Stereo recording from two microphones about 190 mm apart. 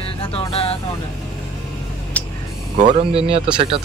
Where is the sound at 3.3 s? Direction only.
30° right (ahead or behind).